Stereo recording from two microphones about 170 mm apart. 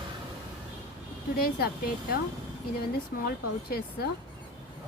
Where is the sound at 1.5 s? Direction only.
65° left (ahead or behind).